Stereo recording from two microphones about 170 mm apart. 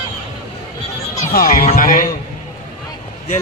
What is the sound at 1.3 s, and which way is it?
Speech, 60° left (ahead or behind).